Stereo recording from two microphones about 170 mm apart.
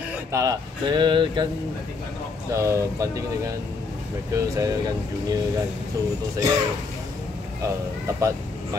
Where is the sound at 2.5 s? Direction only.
15° right (ahead or behind).